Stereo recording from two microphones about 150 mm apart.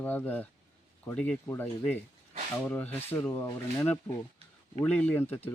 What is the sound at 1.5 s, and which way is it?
Speech, 15° left (ahead or behind).